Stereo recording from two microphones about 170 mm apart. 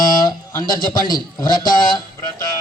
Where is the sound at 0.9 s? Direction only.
25° left (ahead or behind).